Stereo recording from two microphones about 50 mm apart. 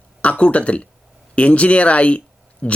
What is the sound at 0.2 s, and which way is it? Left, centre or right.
Speech, left.